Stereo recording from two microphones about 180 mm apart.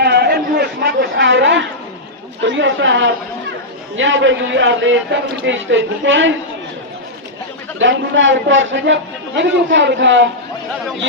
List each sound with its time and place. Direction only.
0.0 s chatter: 65° right (ahead or behind); by 1.6 s 85° right
2.4 s a man's voice: 90° right
7.8 s a man's voice: 90° right